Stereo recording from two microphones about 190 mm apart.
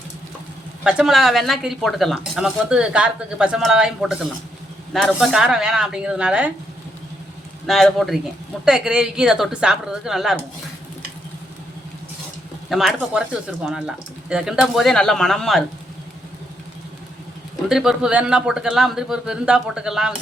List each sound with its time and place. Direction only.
0.9 s speech: centre (ahead or behind)
7.7 s speech: centre (ahead or behind)
12.6 s speech: centre (ahead or behind)
17.7 s speech: centre (ahead or behind)